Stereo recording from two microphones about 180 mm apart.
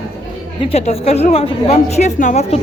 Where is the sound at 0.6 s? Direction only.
35° left (ahead or behind).